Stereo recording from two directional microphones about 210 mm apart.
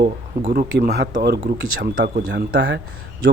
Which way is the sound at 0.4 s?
35° right (ahead or behind).